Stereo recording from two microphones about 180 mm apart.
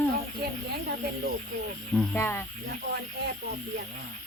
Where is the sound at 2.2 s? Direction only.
15° left (ahead or behind).